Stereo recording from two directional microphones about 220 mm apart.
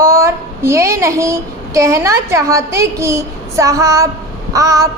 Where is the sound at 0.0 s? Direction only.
15° right (ahead or behind).